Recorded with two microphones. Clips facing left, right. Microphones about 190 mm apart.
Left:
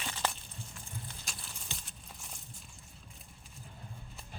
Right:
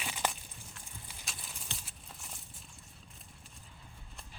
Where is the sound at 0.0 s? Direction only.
10° right (ahead or behind).